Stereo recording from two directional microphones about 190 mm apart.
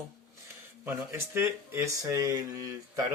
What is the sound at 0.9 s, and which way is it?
Speech, 15° right (ahead or behind).